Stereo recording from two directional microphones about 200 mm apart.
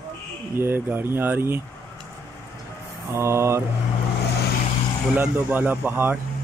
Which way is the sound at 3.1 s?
15° right (ahead or behind).